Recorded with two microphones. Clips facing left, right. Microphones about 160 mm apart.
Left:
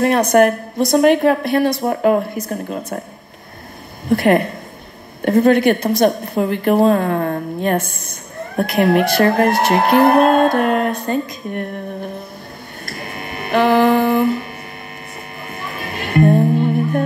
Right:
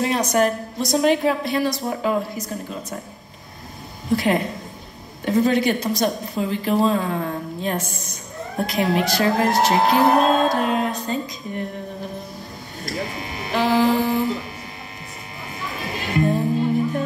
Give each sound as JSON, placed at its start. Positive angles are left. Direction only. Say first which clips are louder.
{"t": 0.0, "sound": "a woman's voice", "louder": "left 7 dB", "side_deg": 55}
{"t": 4.1, "sound": "a woman's voice", "louder": "left 6 dB", "side_deg": 60}
{"t": 12.8, "sound": "music", "louder": "right 2 dB", "side_deg": 60}
{"t": 15.4, "sound": "music", "louder": "left 1 dB", "side_deg": 60}